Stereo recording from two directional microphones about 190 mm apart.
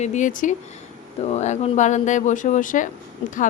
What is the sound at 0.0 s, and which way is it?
Speech, 40° left (ahead or behind).